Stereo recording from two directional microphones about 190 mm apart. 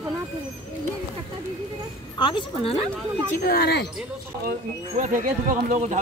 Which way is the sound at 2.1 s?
25° left (ahead or behind).